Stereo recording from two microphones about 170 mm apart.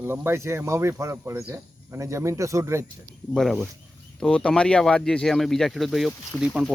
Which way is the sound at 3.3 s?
Centre (ahead or behind).